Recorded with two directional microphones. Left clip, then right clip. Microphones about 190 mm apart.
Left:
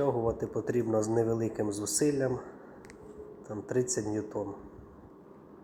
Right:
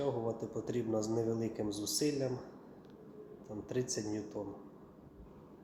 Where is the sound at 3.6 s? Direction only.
15° left (ahead or behind).